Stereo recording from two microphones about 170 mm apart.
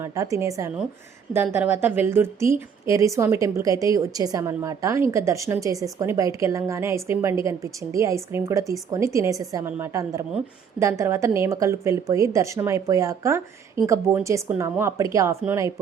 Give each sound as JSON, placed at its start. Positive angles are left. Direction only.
{"t": 0.0, "sound": "a woman's voice", "side_deg": -20}